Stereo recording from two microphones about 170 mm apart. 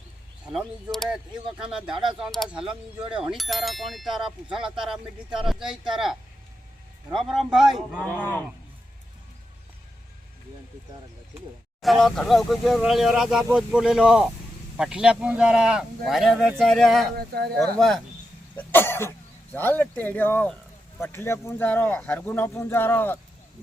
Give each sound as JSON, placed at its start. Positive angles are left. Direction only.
{"t": 0.4, "sound": "speech", "side_deg": 0}
{"t": 1.9, "sound": "speech", "side_deg": -30}
{"t": 2.1, "sound": "speech", "side_deg": 0}
{"t": 11.8, "sound": "speech", "side_deg": 0}
{"t": 17.2, "sound": "speech", "side_deg": -70}
{"t": 17.6, "sound": "speech", "side_deg": 0}
{"t": 18.5, "sound": "cough", "side_deg": 10}
{"t": 19.5, "sound": "speech", "side_deg": 10}